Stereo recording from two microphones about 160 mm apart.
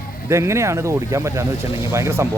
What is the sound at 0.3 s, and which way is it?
Speech, 15° right (ahead or behind).